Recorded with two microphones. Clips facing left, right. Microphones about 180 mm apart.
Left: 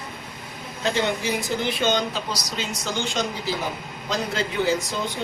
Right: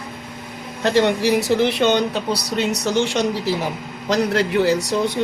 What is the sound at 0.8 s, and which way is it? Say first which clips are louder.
Speech: right 7 dB; 70° right (ahead or behind).